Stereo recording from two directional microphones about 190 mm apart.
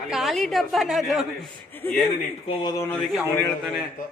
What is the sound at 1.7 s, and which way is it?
Speech, 10° left (ahead or behind).